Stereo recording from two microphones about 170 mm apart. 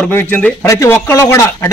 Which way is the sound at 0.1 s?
10° left (ahead or behind).